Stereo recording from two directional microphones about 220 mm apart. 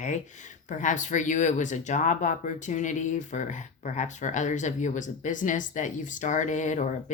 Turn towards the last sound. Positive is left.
turn(degrees=35)  # may be behind; listen again after turning